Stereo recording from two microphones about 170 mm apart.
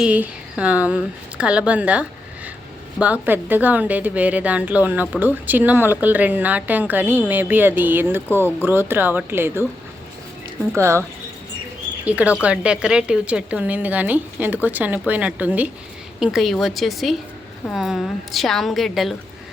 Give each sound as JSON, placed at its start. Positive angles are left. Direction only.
{"t": 0.0, "sound": "a woman's voice", "side_deg": -5}
{"t": 10.8, "sound": "a woman's voice", "side_deg": -15}
{"t": 12.0, "sound": "a woman's voice", "side_deg": -10}